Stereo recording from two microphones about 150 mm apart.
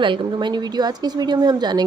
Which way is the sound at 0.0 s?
30° right (ahead or behind).